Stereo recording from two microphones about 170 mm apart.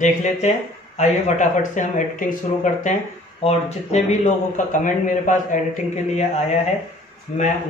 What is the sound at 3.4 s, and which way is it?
Speech, 40° left (ahead or behind).